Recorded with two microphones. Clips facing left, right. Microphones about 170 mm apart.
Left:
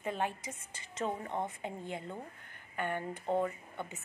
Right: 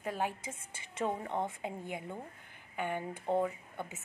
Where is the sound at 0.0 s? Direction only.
5° right (ahead or behind).